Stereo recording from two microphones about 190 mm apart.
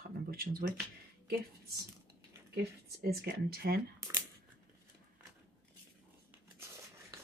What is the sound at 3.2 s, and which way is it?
Speech, 55° right (ahead or behind).